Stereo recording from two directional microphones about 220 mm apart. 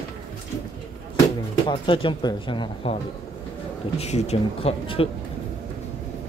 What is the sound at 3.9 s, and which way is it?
Speech, 30° left (ahead or behind).